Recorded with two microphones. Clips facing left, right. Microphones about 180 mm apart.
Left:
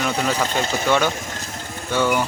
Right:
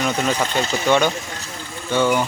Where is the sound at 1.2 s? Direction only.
45° left (ahead or behind).